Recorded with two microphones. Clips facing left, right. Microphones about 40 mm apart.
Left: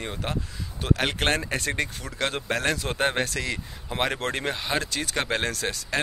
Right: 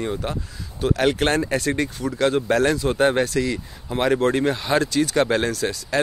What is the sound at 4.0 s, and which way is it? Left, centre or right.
Speech, left.